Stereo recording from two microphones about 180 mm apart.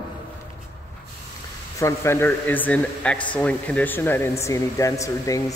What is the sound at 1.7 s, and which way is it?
A man's voice, 15° left (ahead or behind).